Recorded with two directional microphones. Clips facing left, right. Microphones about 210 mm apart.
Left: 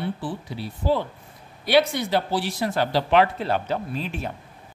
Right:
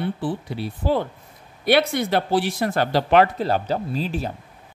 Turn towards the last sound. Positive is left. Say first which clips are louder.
# right 4 dB
turn(degrees=-35)  # may be behind; listen again after turning